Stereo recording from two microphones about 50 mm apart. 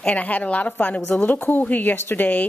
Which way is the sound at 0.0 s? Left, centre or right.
Left.